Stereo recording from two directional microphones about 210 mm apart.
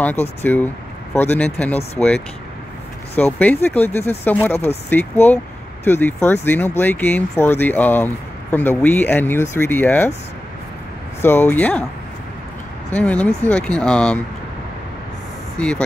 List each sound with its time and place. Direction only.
0.0 s speech: 10° left (ahead or behind)
11.1 s speech: 10° left (ahead or behind)
12.9 s speech: 5° left (ahead or behind)
15.5 s speech: 5° left (ahead or behind)